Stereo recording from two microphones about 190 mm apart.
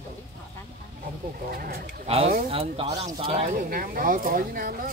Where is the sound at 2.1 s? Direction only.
30° right (ahead or behind).